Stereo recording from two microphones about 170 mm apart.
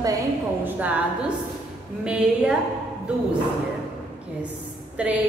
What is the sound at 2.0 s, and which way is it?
Speech, 5° right (ahead or behind).